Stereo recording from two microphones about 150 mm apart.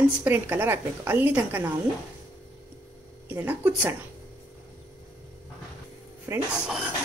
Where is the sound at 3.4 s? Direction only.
10° right (ahead or behind).